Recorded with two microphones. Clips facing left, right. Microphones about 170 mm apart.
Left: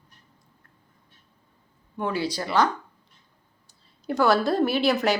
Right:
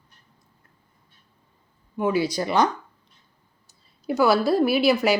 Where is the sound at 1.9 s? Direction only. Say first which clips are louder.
Right 5 dB; 10° right (ahead or behind).